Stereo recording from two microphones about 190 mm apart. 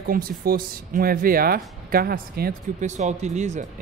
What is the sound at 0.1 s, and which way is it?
Speech, 50° right (ahead or behind).